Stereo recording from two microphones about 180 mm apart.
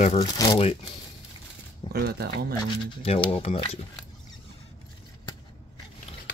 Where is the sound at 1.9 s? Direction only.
60° right (ahead or behind).